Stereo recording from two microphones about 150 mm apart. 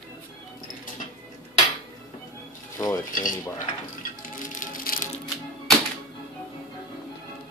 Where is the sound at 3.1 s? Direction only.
60° left (ahead or behind).